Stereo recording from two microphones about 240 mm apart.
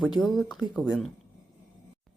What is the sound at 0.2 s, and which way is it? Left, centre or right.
Speech, centre.